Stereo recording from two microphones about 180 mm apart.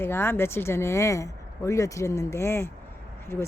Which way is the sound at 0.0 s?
15° left (ahead or behind).